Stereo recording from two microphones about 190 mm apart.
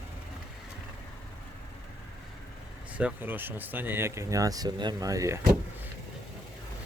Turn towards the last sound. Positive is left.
turn(degrees=-15)  # may be behind; listen again after turning